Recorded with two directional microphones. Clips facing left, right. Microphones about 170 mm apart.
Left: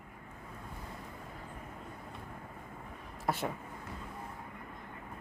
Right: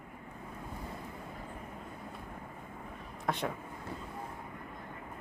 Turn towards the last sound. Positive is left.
turn(degrees=5)  # may be behind; listen again after turning